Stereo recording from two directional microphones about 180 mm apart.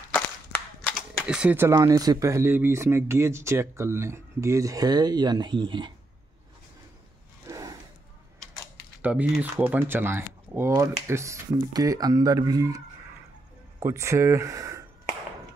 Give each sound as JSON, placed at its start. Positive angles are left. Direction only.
{"t": 0.1, "sound": "cap gun", "side_deg": 5}
{"t": 1.2, "sound": "speech", "side_deg": -5}
{"t": 7.4, "sound": "a sound", "side_deg": -20}
{"t": 9.0, "sound": "speech", "side_deg": -10}